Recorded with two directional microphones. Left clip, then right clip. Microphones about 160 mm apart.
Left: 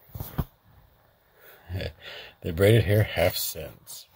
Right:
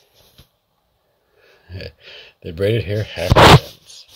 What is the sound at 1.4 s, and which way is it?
Speech, 10° right (ahead or behind).